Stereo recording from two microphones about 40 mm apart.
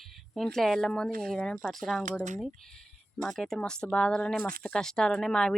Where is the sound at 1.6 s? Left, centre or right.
Centre.